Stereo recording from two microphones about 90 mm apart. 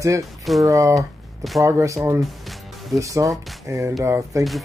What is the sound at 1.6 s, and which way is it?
Speech, 35° right (ahead or behind).